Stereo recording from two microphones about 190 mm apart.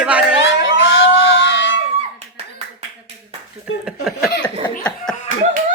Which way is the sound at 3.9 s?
5° right (ahead or behind).